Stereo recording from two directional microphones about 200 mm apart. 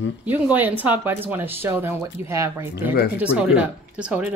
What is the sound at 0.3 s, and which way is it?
A woman's voice, 10° right (ahead or behind).